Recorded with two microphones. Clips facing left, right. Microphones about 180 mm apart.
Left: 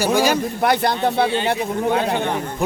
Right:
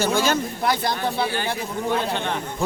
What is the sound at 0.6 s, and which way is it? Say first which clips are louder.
Speech: left 8 dB; 60° left (ahead or behind).